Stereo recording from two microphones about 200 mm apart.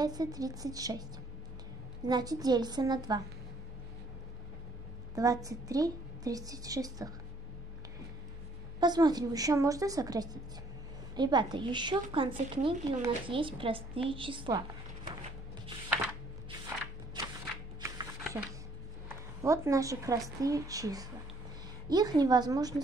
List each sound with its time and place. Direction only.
0.0 s speech: 20° right (ahead or behind)
2.0 s a woman's voice: 20° right (ahead or behind)
5.1 s speech: 15° right (ahead or behind)
8.7 s a woman's voice: 20° right (ahead or behind)
16.4 s a sound: 20° right (ahead or behind)
17.7 s shuffling cards: 15° right (ahead or behind)
19.0 s a woman's voice: 15° right (ahead or behind)